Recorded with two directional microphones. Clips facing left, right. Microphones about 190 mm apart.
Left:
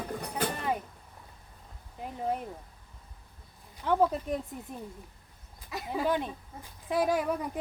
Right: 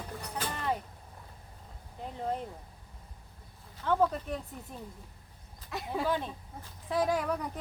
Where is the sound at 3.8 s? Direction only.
15° left (ahead or behind).